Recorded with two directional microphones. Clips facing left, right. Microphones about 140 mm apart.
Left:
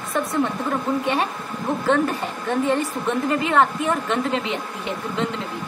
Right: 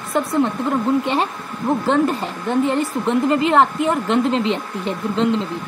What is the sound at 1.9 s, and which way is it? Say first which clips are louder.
Speech: even; 25° right (ahead or behind).